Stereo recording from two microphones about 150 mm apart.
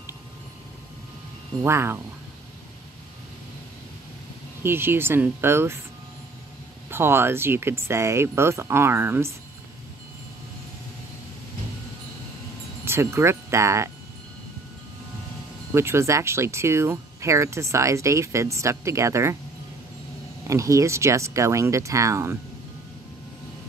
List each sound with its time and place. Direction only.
1.6 s speech: 15° right (ahead or behind)
4.6 s speech: 15° right (ahead or behind)
6.9 s speech: 15° right (ahead or behind)
12.8 s speech: 15° right (ahead or behind)
15.7 s speech: 15° right (ahead or behind)
20.4 s speech: 20° right (ahead or behind)